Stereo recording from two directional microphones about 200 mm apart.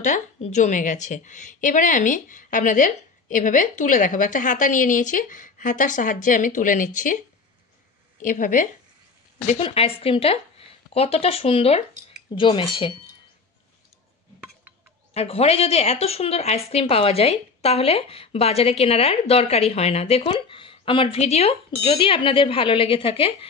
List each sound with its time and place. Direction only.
0.0 s a woman's voice: 35° left (ahead or behind)
8.2 s a woman's voice: 40° left (ahead or behind)
9.5 s speech: 30° left (ahead or behind)
15.1 s a woman's voice: 30° left (ahead or behind)